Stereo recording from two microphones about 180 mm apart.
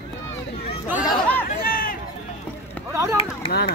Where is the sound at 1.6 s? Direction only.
50° left (ahead or behind).